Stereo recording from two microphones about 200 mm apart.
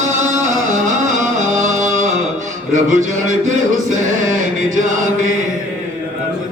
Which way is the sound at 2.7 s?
35° right (ahead or behind).